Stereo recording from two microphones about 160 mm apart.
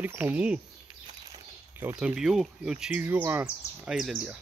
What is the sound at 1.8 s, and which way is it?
Speech, 10° right (ahead or behind).